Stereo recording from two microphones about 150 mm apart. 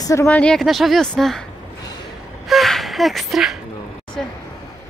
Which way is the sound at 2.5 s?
Centre (ahead or behind).